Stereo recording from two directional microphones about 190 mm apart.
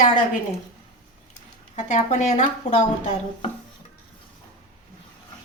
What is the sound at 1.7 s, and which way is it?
Speech, 40° left (ahead or behind).